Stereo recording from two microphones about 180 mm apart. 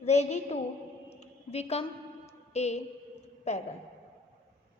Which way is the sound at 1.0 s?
35° left (ahead or behind).